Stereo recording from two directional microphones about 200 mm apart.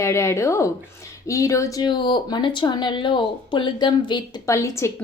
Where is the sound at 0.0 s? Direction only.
15° left (ahead or behind).